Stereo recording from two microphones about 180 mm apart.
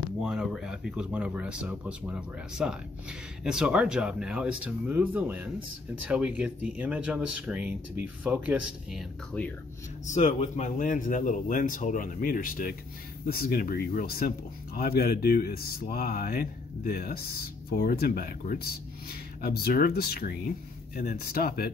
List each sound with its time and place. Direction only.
0.2 s speech: 5° right (ahead or behind)
10.0 s speech: 40° left (ahead or behind)